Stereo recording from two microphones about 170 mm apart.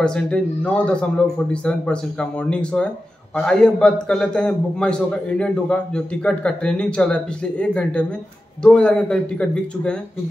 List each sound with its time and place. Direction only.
0.0 s a man's voice: 5° left (ahead or behind)